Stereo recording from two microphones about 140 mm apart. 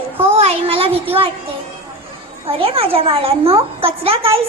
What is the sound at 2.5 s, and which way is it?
A woman's voice, 40° right (ahead or behind).